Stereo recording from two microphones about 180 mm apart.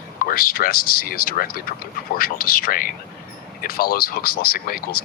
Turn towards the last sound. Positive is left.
turn(degrees=55)  # may be behind; listen again after turning